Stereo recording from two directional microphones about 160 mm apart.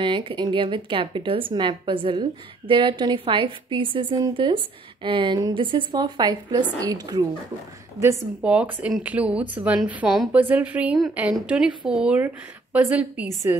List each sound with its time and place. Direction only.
0.0 s a woman's voice: 30° right (ahead or behind)
8.4 s a woman's voice: 5° right (ahead or behind)